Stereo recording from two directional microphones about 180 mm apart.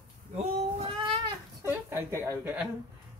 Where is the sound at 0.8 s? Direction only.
30° right (ahead or behind).